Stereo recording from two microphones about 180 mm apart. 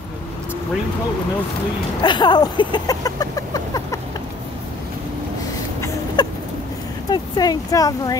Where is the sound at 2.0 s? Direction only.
25° left (ahead or behind).